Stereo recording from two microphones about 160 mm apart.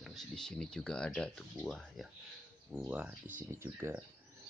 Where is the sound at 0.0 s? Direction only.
Centre (ahead or behind).